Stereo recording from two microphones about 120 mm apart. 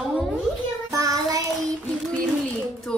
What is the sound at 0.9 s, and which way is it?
Child singing, 30° right (ahead or behind).